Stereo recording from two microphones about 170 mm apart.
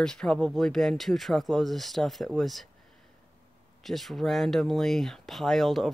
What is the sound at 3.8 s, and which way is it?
Speech, centre (ahead or behind).